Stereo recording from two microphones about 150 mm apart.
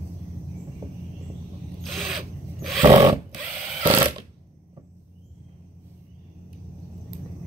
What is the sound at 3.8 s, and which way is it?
Mechanisms, 35° right (ahead or behind).